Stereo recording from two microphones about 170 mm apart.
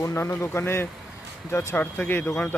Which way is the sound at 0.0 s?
15° left (ahead or behind).